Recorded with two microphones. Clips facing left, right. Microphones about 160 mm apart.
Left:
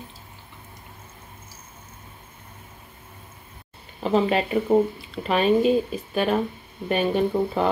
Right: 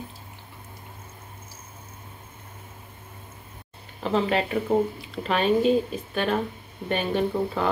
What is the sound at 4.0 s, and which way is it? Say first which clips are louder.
Speech: left 3 dB; 10° left (ahead or behind).